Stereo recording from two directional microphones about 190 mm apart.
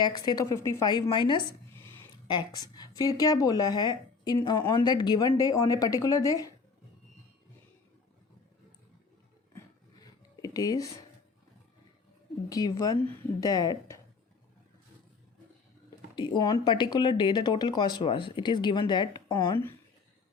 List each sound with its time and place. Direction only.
0.0 s speech: 20° left (ahead or behind)
9.6 s a sound: 20° left (ahead or behind)
12.5 s speech: 20° left (ahead or behind)
16.1 s speech: 25° left (ahead or behind)